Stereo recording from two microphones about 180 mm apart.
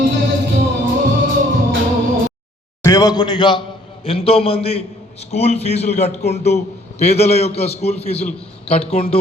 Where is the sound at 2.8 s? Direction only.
20° left (ahead or behind).